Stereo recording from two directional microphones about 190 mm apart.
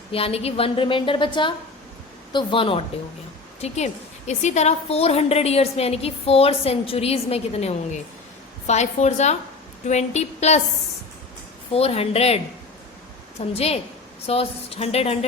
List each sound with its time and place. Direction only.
0.1 s a woman's voice: 30° left (ahead or behind)
11.7 s a woman's voice: 30° left (ahead or behind)
13.5 s a woman's voice: 30° left (ahead or behind)